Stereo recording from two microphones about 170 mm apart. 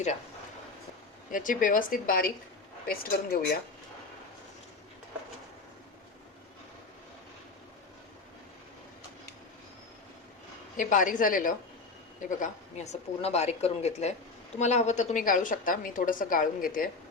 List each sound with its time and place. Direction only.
1.3 s a woman's voice: 50° left (ahead or behind)
10.8 s a woman's voice: 50° left (ahead or behind)
12.4 s a woman's voice: 40° left (ahead or behind)